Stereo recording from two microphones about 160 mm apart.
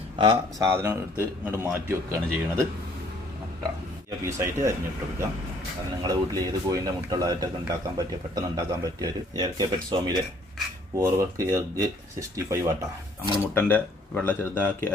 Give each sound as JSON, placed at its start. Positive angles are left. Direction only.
{"t": 0.2, "sound": "speech", "side_deg": -30}
{"t": 0.7, "sound": "a man's voice", "side_deg": -15}
{"t": 4.3, "sound": "a man's voice", "side_deg": -15}
{"t": 6.0, "sound": "a man's voice", "side_deg": -20}
{"t": 13.4, "sound": "speech", "side_deg": 15}